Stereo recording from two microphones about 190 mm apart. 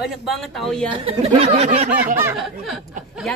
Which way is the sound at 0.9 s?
30° right (ahead or behind).